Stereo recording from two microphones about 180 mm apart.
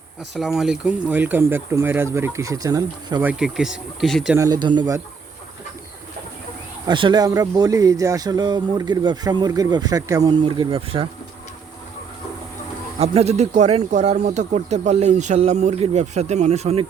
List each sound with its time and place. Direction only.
0.3 s speech: centre (ahead or behind); by 3.2 s 20° right (ahead or behind)
3.2 s speech: 5° right (ahead or behind)
4.4 s speech: 20° right (ahead or behind)
6.8 s speech: 25° right (ahead or behind)
13.0 s speech: 35° right (ahead or behind)